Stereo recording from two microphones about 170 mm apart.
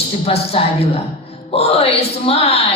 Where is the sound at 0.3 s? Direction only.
35° left (ahead or behind).